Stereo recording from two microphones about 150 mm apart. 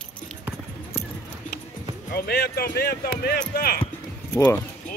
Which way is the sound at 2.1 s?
90° left.